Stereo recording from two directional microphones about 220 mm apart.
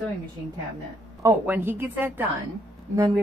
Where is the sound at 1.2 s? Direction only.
10° right (ahead or behind).